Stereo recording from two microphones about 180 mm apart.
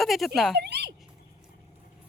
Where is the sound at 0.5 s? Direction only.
65° right (ahead or behind).